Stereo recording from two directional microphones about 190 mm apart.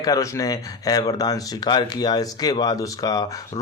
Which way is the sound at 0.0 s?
15° left (ahead or behind).